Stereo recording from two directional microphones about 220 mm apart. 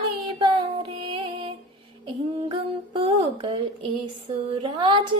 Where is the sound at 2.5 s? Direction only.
25° right (ahead or behind).